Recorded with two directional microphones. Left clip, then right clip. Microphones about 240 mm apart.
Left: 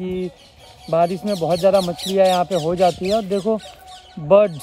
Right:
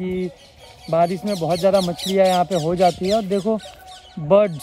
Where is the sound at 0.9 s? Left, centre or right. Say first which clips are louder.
Left 1 dB; centre.